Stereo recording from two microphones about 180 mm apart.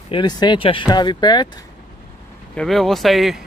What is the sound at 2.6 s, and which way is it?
Speech, centre (ahead or behind).